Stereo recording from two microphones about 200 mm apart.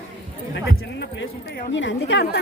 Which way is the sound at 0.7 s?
55° left (ahead or behind).